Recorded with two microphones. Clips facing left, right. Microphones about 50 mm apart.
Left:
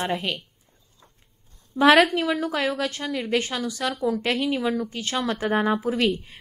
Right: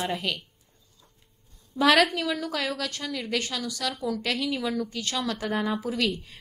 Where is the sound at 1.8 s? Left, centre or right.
Left.